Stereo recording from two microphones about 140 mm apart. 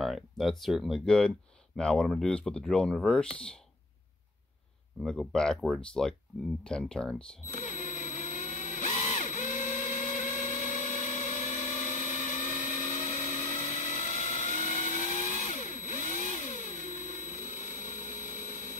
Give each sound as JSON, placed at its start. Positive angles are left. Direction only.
{"t": 0.0, "sound": "speech", "side_deg": 0}
{"t": 5.0, "sound": "speech", "side_deg": 5}
{"t": 7.5, "sound": "a sound", "side_deg": 60}